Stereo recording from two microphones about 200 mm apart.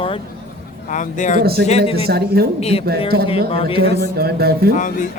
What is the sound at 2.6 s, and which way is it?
A man's voice, 30° left (ahead or behind).